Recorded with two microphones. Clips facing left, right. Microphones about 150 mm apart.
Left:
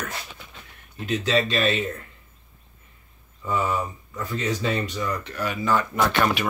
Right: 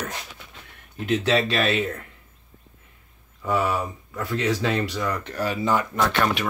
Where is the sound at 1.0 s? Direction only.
65° right (ahead or behind).